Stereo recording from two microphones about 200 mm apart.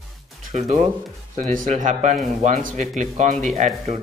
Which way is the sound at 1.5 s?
40° right (ahead or behind).